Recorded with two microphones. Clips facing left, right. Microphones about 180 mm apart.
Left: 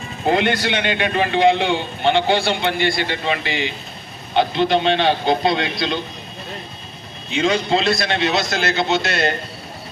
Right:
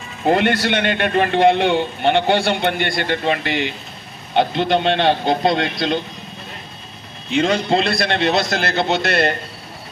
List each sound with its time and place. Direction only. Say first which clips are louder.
0.6 s a man's voice: right 2 dB; 55° right (ahead or behind)
7.3 s a man's voice: right 1 dB; 50° right (ahead or behind)